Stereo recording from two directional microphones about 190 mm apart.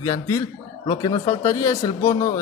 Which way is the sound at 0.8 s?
25° left (ahead or behind).